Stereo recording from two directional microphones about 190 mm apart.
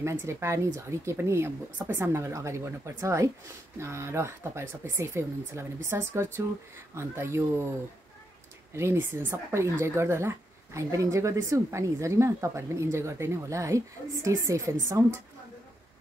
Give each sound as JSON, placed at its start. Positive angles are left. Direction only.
{"t": 0.0, "sound": "a woman's voice", "side_deg": -15}
{"t": 8.7, "sound": "a woman's voice", "side_deg": -15}